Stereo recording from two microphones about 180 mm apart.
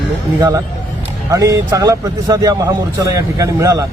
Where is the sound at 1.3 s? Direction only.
15° right (ahead or behind).